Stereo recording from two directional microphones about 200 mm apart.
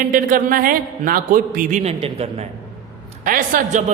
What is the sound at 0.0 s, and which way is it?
Speech, 45° right (ahead or behind).